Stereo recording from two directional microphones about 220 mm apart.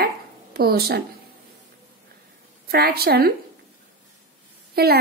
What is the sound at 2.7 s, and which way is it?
Speech, 45° right (ahead or behind).